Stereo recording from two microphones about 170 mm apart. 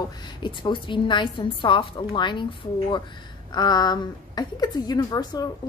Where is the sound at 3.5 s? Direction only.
25° left (ahead or behind).